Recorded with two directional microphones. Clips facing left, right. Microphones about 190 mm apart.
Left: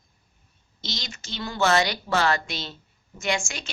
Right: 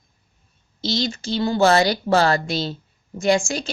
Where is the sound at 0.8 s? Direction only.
30° right (ahead or behind).